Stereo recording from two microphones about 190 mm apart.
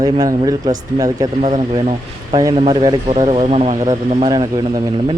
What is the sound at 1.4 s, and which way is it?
Speech, 35° right (ahead or behind).